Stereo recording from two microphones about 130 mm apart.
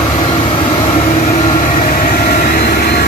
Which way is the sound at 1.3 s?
70° left (ahead or behind).